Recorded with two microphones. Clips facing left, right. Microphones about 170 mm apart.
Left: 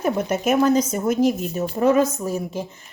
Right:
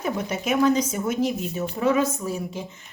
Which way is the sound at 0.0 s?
45° left (ahead or behind).